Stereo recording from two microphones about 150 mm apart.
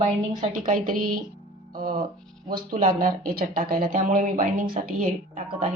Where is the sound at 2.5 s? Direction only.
65° right (ahead or behind).